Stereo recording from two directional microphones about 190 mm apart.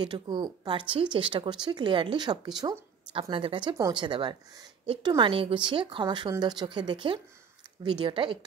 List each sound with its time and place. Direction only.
0.0 s speech: 25° right (ahead or behind)